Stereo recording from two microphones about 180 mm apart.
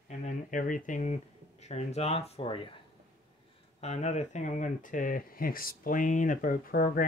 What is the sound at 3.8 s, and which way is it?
Speech, 40° left (ahead or behind).